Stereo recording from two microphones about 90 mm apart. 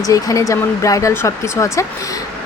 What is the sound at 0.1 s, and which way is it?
Speech, 40° left (ahead or behind).